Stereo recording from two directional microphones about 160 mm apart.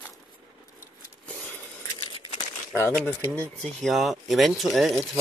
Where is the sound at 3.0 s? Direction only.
10° left (ahead or behind).